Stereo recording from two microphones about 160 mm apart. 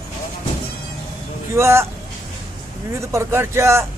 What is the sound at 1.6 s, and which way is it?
Speech, 15° right (ahead or behind).